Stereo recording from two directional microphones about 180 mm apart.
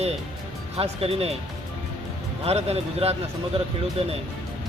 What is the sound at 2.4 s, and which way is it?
Speech, 35° right (ahead or behind).